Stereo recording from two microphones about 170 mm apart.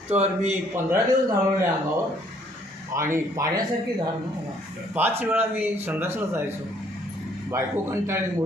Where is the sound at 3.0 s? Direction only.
15° right (ahead or behind).